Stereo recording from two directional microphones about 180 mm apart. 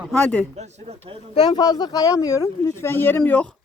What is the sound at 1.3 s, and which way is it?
Speech, 20° left (ahead or behind).